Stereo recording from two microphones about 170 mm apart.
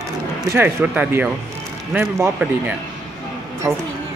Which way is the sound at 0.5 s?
15° right (ahead or behind).